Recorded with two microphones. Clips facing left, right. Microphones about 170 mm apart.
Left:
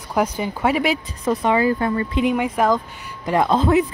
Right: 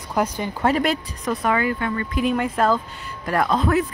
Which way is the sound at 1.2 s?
20° left (ahead or behind).